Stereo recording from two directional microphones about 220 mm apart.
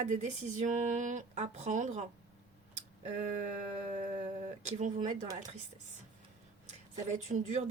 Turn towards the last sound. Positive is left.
turn(degrees=-35)  # may be behind; listen again after turning